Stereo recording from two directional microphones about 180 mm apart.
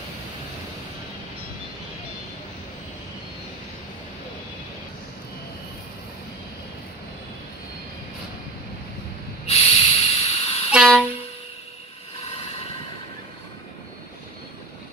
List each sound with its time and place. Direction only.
9.5 s snort: 35° left (ahead or behind)
10.7 s train: centre (ahead or behind)